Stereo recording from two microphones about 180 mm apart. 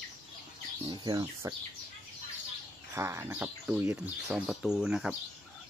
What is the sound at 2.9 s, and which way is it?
Speech, 15° right (ahead or behind).